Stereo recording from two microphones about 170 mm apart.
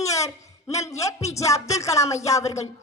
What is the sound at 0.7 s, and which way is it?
Music, 20° left (ahead or behind).